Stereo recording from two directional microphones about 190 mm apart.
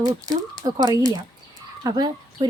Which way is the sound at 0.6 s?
20° right (ahead or behind).